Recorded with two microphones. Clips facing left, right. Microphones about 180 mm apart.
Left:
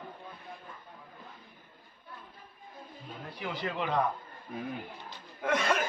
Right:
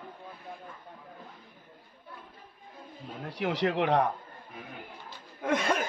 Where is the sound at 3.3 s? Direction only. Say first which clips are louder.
Right 8 dB; 80° right.